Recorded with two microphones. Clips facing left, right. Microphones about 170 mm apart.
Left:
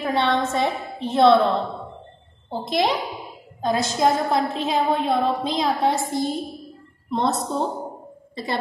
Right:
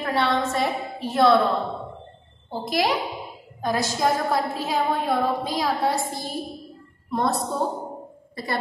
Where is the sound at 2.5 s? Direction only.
20° left (ahead or behind).